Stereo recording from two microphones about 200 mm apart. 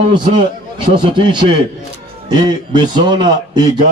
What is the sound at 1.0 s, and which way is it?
Speech, 25° right (ahead or behind).